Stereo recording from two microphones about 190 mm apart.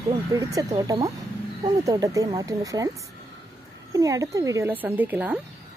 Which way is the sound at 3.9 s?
20° right (ahead or behind).